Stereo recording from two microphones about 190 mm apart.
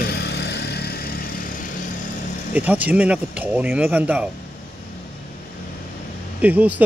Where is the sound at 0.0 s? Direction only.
60° left (ahead or behind).